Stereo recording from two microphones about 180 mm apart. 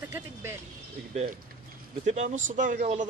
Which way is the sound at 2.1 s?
40° right (ahead or behind).